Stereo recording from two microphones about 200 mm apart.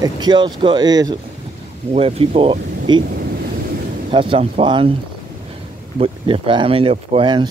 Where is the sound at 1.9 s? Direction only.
30° right (ahead or behind).